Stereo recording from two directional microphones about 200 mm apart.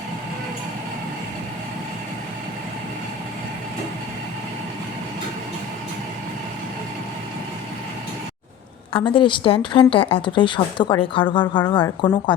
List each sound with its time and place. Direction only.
8.9 s speech: 25° left (ahead or behind)